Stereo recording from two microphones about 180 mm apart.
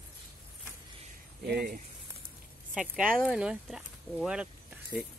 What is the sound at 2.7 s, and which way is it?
Speech, 5° right (ahead or behind).